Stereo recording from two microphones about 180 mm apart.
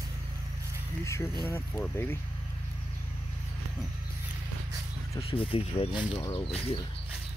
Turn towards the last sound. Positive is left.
turn(degrees=35)  # may be behind; listen again after turning